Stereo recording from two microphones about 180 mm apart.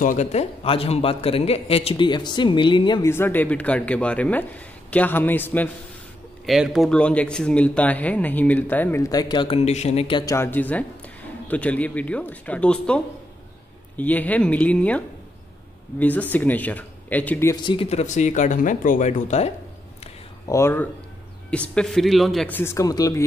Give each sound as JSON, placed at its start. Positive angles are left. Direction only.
{"t": 0.0, "sound": "a man's voice", "side_deg": 40}
{"t": 3.1, "sound": "a man's voice", "side_deg": 10}
{"t": 6.4, "sound": "a man's voice", "side_deg": 0}
{"t": 9.1, "sound": "speech", "side_deg": 25}
{"t": 10.3, "sound": "a man's voice", "side_deg": 10}
{"t": 17.6, "sound": "speech", "side_deg": 35}
{"t": 20.4, "sound": "a man's voice", "side_deg": 15}
{"t": 22.6, "sound": "a man's voice", "side_deg": 15}